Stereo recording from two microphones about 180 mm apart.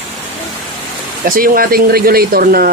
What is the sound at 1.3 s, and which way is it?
Speech, 50° right (ahead or behind).